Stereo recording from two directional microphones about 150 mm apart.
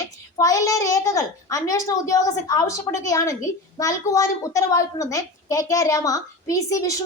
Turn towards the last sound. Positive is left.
turn(degrees=20)  # may be behind; listen again after turning